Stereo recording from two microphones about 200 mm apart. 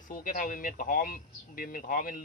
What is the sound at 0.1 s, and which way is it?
Speech, 45° left (ahead or behind).